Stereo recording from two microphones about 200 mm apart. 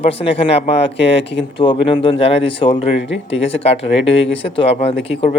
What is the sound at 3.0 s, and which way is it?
Speech, 65° left (ahead or behind).